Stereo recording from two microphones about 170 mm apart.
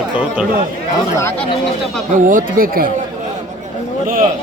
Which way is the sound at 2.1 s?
50° right (ahead or behind).